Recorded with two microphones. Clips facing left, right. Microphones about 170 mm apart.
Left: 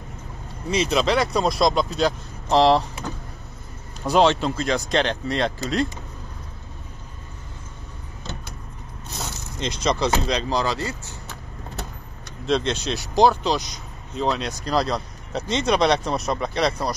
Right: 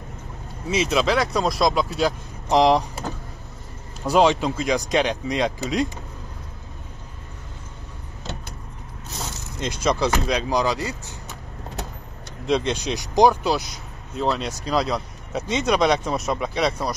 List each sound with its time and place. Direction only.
0.7 s speech: centre (ahead or behind)
4.0 s speech: 10° right (ahead or behind)
9.8 s speech: 10° right (ahead or behind)
12.4 s speech: 10° right (ahead or behind)